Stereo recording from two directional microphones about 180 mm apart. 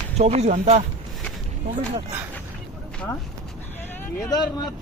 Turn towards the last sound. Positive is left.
turn(degrees=20)  # may be behind; listen again after turning